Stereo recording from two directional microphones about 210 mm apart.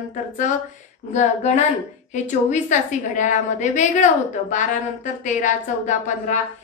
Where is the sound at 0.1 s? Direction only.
35° left (ahead or behind).